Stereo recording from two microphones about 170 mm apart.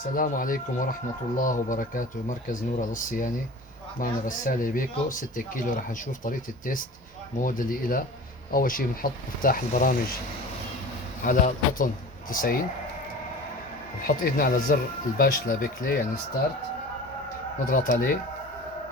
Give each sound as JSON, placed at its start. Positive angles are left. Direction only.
{"t": 0.2, "sound": "speech", "side_deg": 55}
{"t": 11.2, "sound": "speech", "side_deg": 50}
{"t": 14.1, "sound": "speech", "side_deg": 60}
{"t": 17.7, "sound": "speech", "side_deg": 60}